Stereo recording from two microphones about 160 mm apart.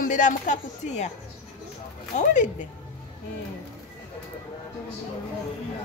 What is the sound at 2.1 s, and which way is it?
Speech, 50° left (ahead or behind).